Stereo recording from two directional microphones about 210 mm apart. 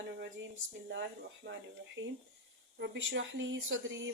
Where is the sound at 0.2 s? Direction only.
55° right (ahead or behind).